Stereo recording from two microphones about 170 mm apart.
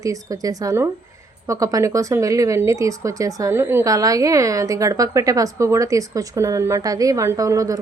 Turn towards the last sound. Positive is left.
turn(degrees=-20)  # may be behind; listen again after turning